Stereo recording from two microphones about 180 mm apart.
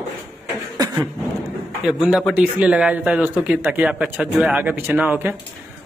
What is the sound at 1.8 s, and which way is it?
Speech, 5° right (ahead or behind).